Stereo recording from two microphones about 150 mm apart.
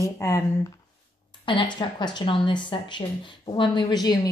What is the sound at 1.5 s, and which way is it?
Speech, 30° left (ahead or behind).